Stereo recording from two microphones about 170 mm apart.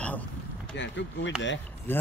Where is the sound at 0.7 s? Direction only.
90° left.